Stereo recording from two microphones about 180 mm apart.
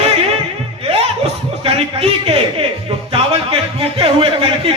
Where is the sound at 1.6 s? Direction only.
35° right (ahead or behind).